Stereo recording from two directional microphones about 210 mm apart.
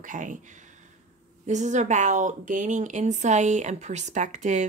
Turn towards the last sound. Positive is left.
turn(degrees=-35)  # may be behind; listen again after turning